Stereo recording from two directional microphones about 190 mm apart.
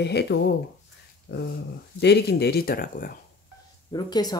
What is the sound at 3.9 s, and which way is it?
Speech, 20° left (ahead or behind).